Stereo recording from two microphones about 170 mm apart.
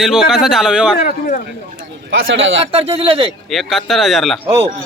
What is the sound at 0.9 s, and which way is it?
Speech, 60° left (ahead or behind).